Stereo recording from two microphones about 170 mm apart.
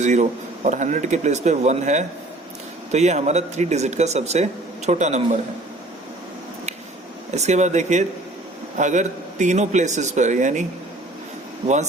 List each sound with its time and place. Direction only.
0.0 s speech: 45° right (ahead or behind)
7.3 s speech: 40° right (ahead or behind)